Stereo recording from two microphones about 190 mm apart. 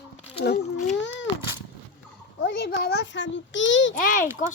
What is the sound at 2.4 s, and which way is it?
A child's voice, 60° left (ahead or behind).